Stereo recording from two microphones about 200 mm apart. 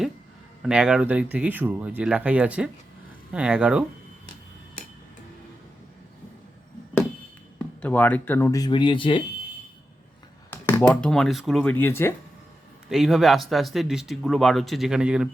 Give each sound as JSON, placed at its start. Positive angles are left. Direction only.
{"t": 0.6, "sound": "speech", "side_deg": -5}
{"t": 7.8, "sound": "speech", "side_deg": 10}
{"t": 10.8, "sound": "speech", "side_deg": 5}
{"t": 12.9, "sound": "speech", "side_deg": 0}